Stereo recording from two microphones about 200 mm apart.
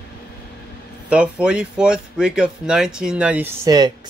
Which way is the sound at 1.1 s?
5° right (ahead or behind).